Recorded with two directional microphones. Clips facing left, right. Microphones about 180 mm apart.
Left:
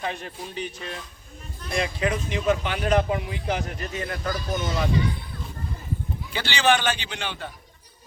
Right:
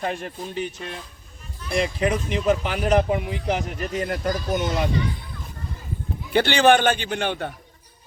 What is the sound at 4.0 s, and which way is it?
Speech, 45° right (ahead or behind).